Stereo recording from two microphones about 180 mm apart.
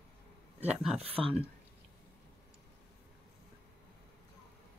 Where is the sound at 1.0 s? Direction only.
30° right (ahead or behind).